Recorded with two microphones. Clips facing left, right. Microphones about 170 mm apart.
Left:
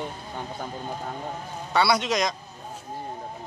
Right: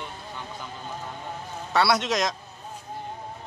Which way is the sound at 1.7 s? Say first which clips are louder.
Even; centre (ahead or behind).